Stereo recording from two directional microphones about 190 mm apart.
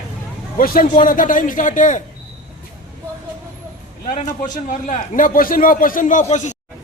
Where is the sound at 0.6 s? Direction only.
45° left (ahead or behind).